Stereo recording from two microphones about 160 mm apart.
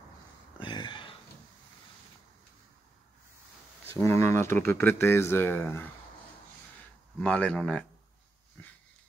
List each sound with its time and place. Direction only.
0.6 s a sound: 30° left (ahead or behind)
3.8 s speech: 15° left (ahead or behind)
7.2 s speech: 10° left (ahead or behind)